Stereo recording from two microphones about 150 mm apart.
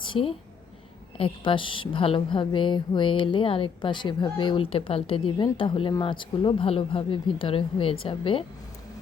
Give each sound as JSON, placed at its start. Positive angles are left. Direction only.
{"t": 0.0, "sound": "a woman's voice", "side_deg": 35}